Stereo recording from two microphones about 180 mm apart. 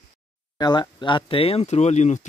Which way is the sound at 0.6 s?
25° left (ahead or behind).